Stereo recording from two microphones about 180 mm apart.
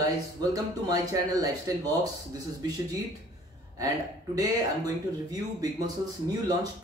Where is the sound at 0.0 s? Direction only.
20° right (ahead or behind).